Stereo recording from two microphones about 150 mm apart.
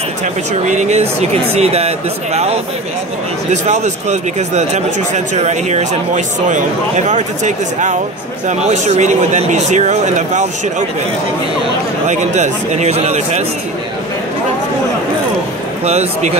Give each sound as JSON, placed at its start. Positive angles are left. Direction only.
{"t": 0.7, "sound": "a man's voice", "side_deg": -50}
{"t": 3.6, "sound": "a man's voice", "side_deg": -50}
{"t": 12.1, "sound": "a man's voice", "side_deg": -50}
{"t": 15.8, "sound": "a man's voice", "side_deg": -45}